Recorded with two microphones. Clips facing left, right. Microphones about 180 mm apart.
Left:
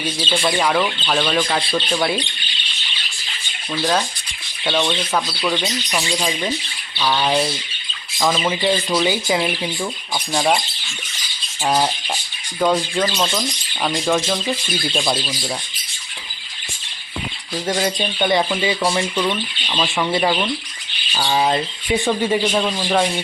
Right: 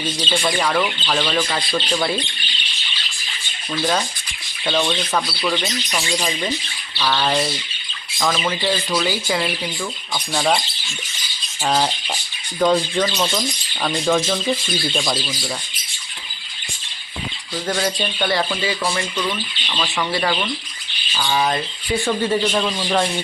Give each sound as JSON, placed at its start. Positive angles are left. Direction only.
{"t": 0.0, "sound": "speech", "side_deg": 5}
{"t": 4.6, "sound": "speech", "side_deg": 0}
{"t": 7.0, "sound": "speech", "side_deg": 10}
{"t": 8.4, "sound": "speech", "side_deg": 15}
{"t": 11.6, "sound": "speech", "side_deg": 5}
{"t": 17.7, "sound": "speech", "side_deg": 20}